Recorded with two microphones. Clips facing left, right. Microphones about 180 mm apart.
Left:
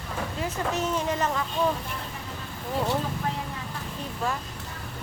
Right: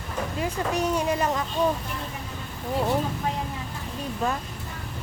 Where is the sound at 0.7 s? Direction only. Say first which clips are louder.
Right 3 dB; 15° right (ahead or behind).